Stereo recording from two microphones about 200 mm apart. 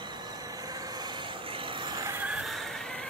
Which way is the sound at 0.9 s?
25° right (ahead or behind).